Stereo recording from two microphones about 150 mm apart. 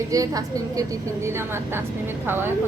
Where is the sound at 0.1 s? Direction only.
25° right (ahead or behind).